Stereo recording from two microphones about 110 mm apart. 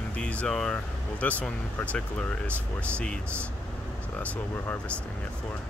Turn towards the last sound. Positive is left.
turn(degrees=15)  # may be behind; listen again after turning